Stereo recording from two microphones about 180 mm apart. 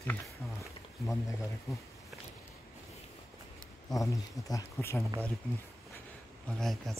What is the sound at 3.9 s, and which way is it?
Speech, 20° left (ahead or behind).